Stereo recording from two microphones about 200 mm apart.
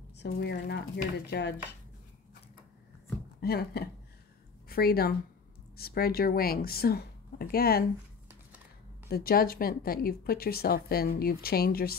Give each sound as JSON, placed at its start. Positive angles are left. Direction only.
{"t": 0.2, "sound": "speech", "side_deg": 50}
{"t": 3.3, "sound": "a woman's voice", "side_deg": 50}
{"t": 9.1, "sound": "speech", "side_deg": 50}